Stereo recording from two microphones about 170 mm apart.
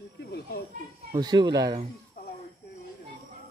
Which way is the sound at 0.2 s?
70° left (ahead or behind).